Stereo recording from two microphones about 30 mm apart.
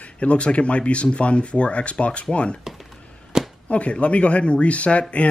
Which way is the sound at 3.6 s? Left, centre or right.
Left.